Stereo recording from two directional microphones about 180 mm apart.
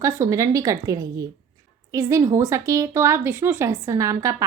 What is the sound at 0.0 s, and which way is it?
A woman's voice, 15° right (ahead or behind).